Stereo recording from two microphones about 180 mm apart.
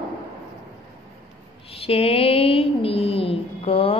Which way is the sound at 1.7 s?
35° left (ahead or behind).